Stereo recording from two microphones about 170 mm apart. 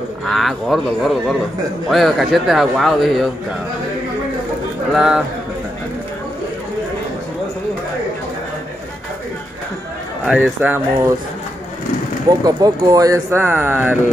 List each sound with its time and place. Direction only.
0.3 s speech: centre (ahead or behind)
4.9 s speech: 5° right (ahead or behind)
10.2 s speech: 5° right (ahead or behind)
12.4 s speech: 20° right (ahead or behind)